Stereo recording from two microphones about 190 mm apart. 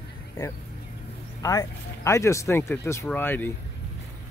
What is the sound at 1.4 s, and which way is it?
Speech, 15° left (ahead or behind).